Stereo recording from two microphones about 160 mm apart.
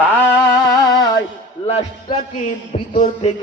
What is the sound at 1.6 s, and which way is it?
Music, 40° left (ahead or behind).